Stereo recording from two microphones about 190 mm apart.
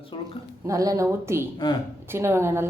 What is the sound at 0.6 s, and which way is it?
A woman's voice, 15° right (ahead or behind).